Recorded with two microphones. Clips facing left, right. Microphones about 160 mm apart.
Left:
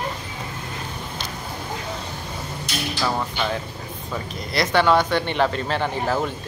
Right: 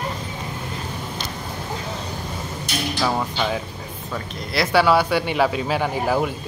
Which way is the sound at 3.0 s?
10° right (ahead or behind).